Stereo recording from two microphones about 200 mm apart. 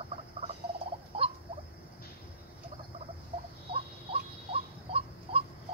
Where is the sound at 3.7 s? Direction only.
30° right (ahead or behind).